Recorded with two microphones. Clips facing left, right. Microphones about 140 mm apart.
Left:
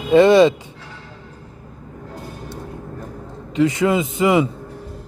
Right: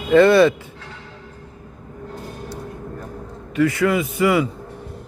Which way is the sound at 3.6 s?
20° left (ahead or behind).